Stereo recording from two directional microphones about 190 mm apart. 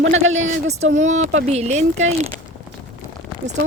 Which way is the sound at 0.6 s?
35° right (ahead or behind).